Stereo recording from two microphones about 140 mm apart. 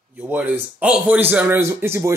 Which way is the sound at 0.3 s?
10° right (ahead or behind).